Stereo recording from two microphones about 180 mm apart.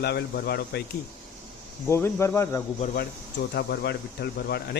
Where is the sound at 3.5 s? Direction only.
65° left (ahead or behind).